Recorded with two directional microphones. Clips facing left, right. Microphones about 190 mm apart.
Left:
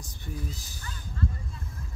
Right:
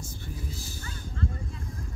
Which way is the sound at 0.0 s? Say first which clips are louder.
Left 1 dB; 15° left (ahead or behind).